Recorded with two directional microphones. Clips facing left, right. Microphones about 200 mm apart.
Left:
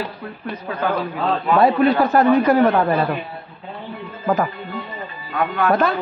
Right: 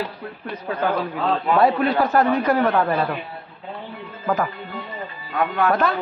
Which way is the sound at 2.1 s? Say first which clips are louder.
Left 4 dB; 5° left (ahead or behind).